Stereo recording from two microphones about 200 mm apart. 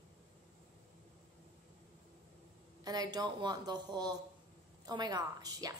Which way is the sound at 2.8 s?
20° right (ahead or behind).